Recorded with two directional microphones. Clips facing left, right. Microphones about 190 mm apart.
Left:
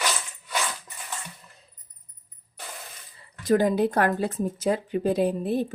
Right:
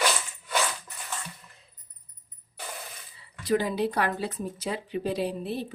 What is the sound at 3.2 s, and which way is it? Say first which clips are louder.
Speech: left 5 dB; 45° left (ahead or behind).